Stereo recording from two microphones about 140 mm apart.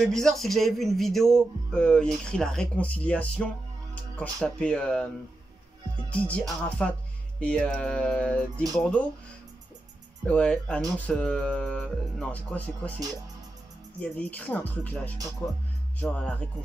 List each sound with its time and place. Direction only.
0.0 s speech: 5° left (ahead or behind)
6.0 s speech: 10° left (ahead or behind)
10.2 s speech: 10° left (ahead or behind)
13.9 s speech: 10° left (ahead or behind)